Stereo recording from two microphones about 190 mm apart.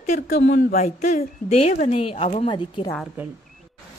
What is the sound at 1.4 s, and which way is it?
A woman's voice, 35° left (ahead or behind).